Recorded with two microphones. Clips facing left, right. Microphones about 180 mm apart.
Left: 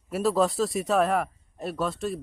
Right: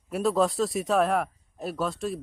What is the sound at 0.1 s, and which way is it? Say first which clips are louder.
Speech: even; centre (ahead or behind).